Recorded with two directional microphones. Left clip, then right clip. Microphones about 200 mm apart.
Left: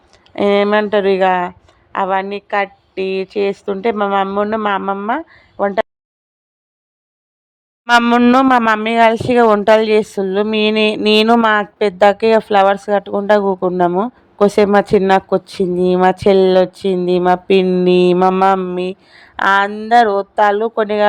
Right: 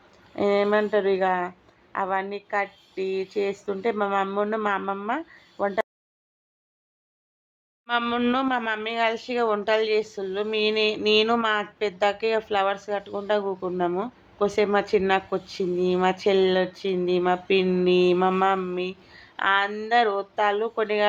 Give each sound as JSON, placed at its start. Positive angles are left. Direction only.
{"t": 0.3, "sound": "speech", "side_deg": 30}
{"t": 7.9, "sound": "speech", "side_deg": 55}